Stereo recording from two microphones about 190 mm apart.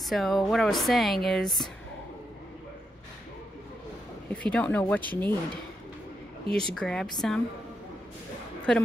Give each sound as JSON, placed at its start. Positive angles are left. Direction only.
{"t": 0.1, "sound": "speech", "side_deg": 0}
{"t": 4.3, "sound": "speech", "side_deg": 5}
{"t": 6.5, "sound": "speech", "side_deg": 5}
{"t": 8.7, "sound": "speech", "side_deg": 5}